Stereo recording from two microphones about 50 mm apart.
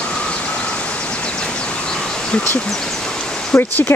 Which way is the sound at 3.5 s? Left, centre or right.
Left.